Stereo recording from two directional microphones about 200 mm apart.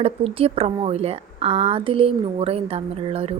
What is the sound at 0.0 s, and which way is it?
A woman's voice, 30° right (ahead or behind).